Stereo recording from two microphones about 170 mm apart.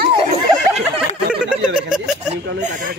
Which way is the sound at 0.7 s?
5° right (ahead or behind).